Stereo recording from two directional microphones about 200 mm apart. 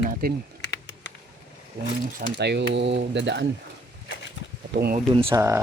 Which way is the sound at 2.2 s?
55° right (ahead or behind).